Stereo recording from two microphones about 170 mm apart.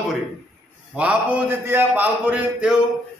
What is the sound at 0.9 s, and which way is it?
A man's voice, 10° right (ahead or behind).